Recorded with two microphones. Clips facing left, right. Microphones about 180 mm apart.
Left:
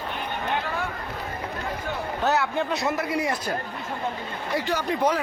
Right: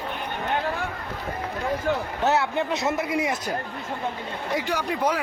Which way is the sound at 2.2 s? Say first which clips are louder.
Right 1 dB; 25° right (ahead or behind).